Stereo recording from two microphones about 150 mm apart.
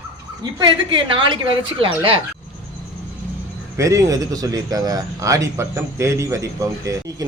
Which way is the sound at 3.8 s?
20° right (ahead or behind).